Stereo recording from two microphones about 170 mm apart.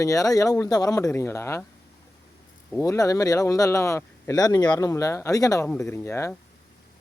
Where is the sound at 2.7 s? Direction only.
20° left (ahead or behind).